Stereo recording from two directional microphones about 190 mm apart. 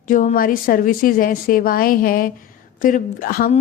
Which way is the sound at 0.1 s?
45° left (ahead or behind).